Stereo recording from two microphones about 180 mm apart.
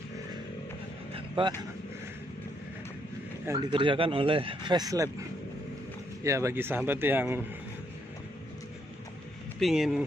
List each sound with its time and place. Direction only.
1.1 s vehicle: 30° right (ahead or behind)
3.4 s speech: 25° right (ahead or behind)
6.2 s speech: 15° right (ahead or behind)
9.6 s speech: centre (ahead or behind)